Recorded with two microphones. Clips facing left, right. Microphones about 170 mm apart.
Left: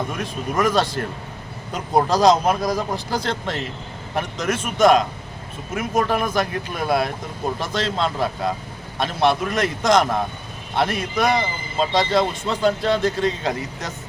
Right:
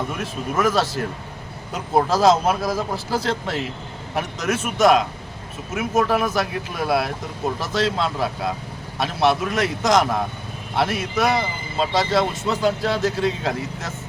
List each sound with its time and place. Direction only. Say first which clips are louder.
0.2 s a man's voice: even; 5° right (ahead or behind)